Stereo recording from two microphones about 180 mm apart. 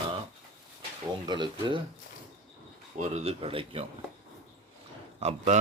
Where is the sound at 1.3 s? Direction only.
25° right (ahead or behind).